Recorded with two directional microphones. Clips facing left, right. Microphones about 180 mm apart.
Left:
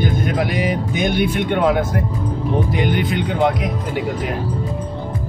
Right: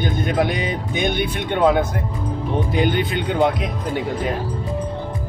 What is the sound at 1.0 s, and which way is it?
Speech, 20° right (ahead or behind).